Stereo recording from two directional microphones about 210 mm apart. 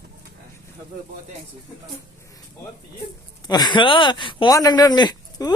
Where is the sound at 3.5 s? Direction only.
20° left (ahead or behind).